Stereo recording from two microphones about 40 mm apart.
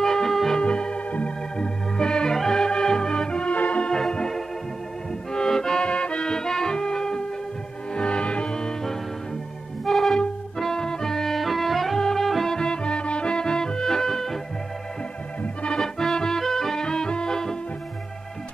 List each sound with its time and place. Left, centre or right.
0.0 s music: centre
0.6 s organ: left
2.0 s music: centre
2.3 s organ: centre; by 3.9 s left
3.9 s music: centre
5.9 s music: left
9.8 s music: centre
12.5 s music: left
15.7 s music: centre